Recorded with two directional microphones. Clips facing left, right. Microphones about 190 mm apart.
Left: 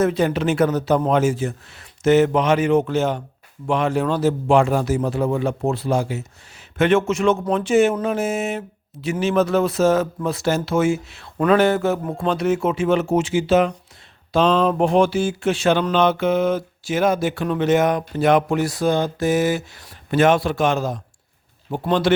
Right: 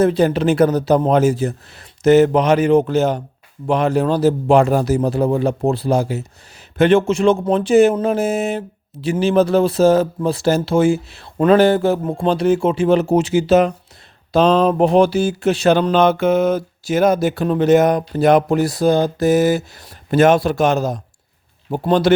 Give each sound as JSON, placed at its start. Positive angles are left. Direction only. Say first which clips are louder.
{"t": 0.0, "sound": "a man's voice", "louder": "right 4 dB", "side_deg": -35}